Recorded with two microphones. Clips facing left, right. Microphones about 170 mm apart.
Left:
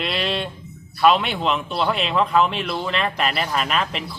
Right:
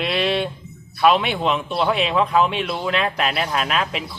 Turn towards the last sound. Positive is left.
turn(degrees=-5)  # may be behind; listen again after turning